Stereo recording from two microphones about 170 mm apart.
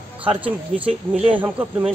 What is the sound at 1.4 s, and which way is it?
Speech, 10° right (ahead or behind).